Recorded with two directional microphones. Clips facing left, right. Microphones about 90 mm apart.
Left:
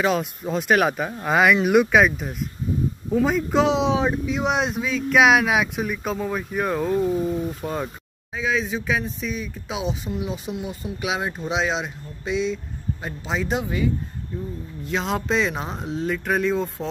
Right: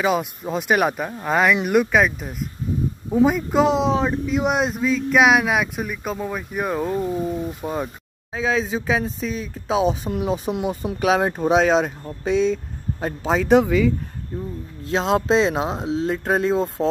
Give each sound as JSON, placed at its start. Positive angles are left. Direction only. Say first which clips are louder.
{"t": 0.4, "sound": "speech", "louder": "even", "side_deg": -10}
{"t": 8.3, "sound": "speech", "louder": "right 2 dB", "side_deg": -35}
{"t": 10.1, "sound": "speech", "louder": "right 4 dB", "side_deg": -50}
{"t": 10.5, "sound": "speech", "louder": "right 6 dB", "side_deg": -60}
{"t": 11.1, "sound": "speech", "louder": "right 8 dB", "side_deg": -45}
{"t": 13.5, "sound": "speech", "louder": "right 10 dB", "side_deg": -75}
{"t": 14.9, "sound": "speech", "louder": "right 5 dB", "side_deg": -30}